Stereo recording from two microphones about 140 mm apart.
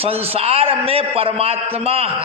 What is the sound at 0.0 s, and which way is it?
A man's voice, 45° right (ahead or behind).